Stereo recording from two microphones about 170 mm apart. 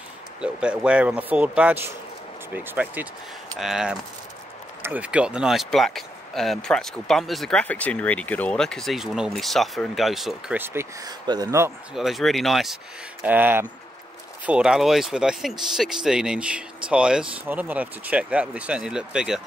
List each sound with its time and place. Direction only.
0.4 s speech: 5° right (ahead or behind)
10.6 s speech: 15° right (ahead or behind)
11.9 s speech: centre (ahead or behind)
13.2 s speech: 10° right (ahead or behind)